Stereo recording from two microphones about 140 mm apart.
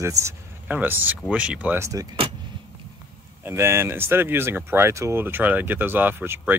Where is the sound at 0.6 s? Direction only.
10° right (ahead or behind).